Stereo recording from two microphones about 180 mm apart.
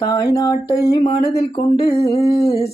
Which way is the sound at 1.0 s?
35° left (ahead or behind).